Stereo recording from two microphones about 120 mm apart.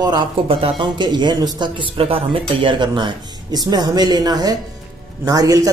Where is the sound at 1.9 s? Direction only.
55° right (ahead or behind).